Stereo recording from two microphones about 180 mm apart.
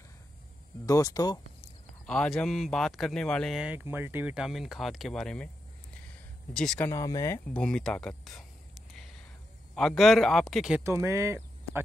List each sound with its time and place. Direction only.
0.8 s speech: 20° left (ahead or behind)
2.0 s speech: 5° left (ahead or behind)
6.5 s speech: 5° left (ahead or behind)
6.9 s speech: 20° left (ahead or behind)
9.8 s speech: centre (ahead or behind)
10.8 s speech: 15° right (ahead or behind)